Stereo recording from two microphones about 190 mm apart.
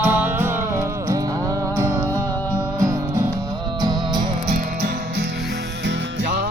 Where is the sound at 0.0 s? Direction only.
10° right (ahead or behind).